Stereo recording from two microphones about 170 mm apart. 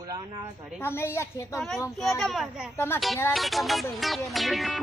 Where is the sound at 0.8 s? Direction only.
15° left (ahead or behind).